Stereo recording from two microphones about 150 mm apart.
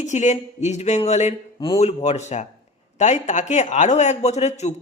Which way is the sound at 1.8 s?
50° left (ahead or behind).